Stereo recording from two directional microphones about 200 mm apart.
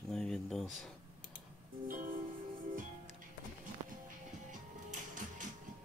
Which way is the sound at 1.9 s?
45° right (ahead or behind).